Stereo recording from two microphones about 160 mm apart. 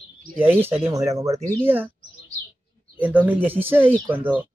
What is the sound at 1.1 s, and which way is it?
Speech, 20° right (ahead or behind).